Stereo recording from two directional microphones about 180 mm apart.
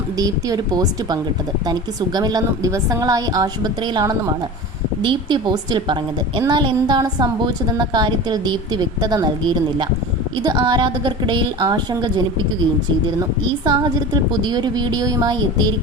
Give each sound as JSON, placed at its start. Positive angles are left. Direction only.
{"t": 0.2, "sound": "a woman's voice", "side_deg": -20}
{"t": 13.7, "sound": "a woman's voice", "side_deg": -20}